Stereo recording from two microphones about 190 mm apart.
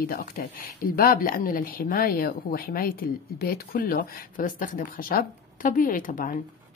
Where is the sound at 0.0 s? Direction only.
50° left (ahead or behind).